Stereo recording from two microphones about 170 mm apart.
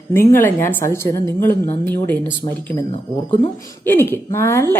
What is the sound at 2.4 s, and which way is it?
Speech, 30° left (ahead or behind).